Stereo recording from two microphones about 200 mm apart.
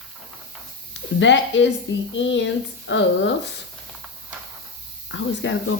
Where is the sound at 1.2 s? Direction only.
65° left (ahead or behind).